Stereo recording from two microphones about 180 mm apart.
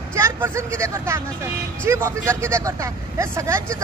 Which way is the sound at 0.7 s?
15° right (ahead or behind).